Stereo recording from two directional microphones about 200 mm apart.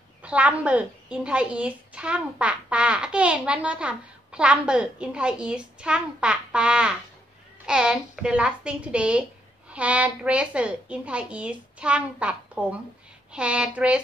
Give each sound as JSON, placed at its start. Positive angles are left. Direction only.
{"t": 0.2, "sound": "a woman's voice", "side_deg": -5}